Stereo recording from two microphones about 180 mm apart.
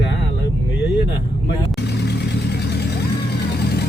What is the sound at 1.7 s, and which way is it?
Vehicle, 65° left (ahead or behind).